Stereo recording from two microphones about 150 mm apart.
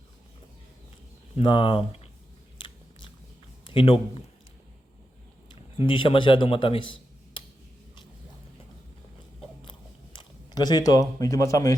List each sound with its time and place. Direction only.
1.4 s a man's voice: 35° left (ahead or behind)
2.6 s biting: 35° left (ahead or behind)
3.7 s a man's voice: 35° left (ahead or behind)
5.5 s a man's voice: 35° left (ahead or behind)
9.6 s biting: 30° left (ahead or behind)
11.2 s speech: 20° left (ahead or behind)